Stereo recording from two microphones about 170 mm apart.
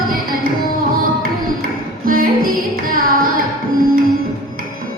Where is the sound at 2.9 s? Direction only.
55° right (ahead or behind).